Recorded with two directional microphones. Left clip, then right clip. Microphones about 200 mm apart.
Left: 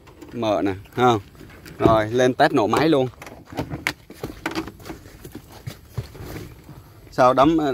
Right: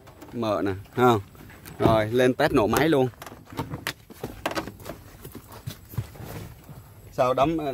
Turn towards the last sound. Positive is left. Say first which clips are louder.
# left 7 dB
turn(degrees=30)  # may be behind; listen again after turning